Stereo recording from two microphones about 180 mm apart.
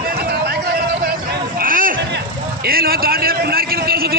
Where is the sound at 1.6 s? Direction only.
50° right (ahead or behind).